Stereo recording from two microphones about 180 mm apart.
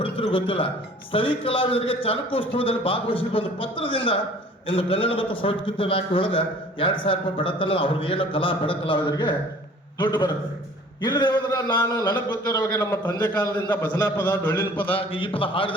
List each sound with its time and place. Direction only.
0.0 s a sound: 30° left (ahead or behind)
1.1 s a man's voice: 30° left (ahead or behind); by 14.8 s 15° left (ahead or behind)
14.8 s a man's voice: 30° left (ahead or behind)